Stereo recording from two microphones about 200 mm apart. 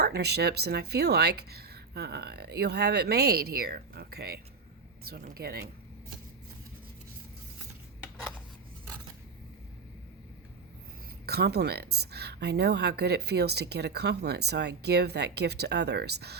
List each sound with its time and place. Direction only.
0.0 s speech: 55° right (ahead or behind)
11.3 s speech: 55° right (ahead or behind)